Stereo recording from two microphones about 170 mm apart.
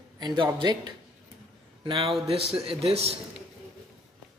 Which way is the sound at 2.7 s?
35° right (ahead or behind).